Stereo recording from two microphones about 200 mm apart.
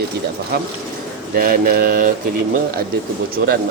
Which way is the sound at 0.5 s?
50° right (ahead or behind).